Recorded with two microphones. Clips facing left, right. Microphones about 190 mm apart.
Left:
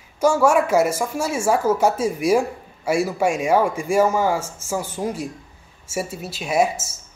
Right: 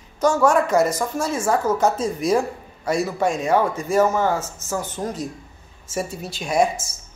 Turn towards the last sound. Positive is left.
turn(degrees=5)  # may be behind; listen again after turning